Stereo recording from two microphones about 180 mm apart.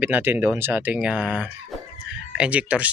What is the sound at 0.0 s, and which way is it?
Speech, 10° right (ahead or behind).